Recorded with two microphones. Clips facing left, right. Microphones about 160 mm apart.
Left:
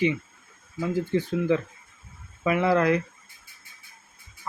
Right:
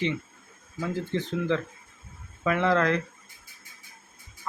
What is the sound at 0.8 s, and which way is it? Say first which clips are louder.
Speech: left 4 dB; 10° left (ahead or behind).